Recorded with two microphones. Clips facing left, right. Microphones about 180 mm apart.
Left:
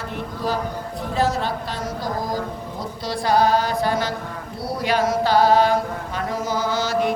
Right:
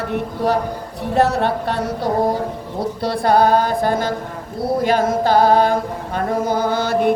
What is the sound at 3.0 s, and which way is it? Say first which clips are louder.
Chant: right 4 dB; 60° right (ahead or behind).